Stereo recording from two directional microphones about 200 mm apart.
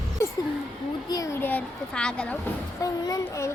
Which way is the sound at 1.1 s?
15° left (ahead or behind).